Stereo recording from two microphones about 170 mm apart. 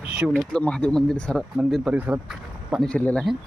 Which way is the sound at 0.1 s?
Centre (ahead or behind).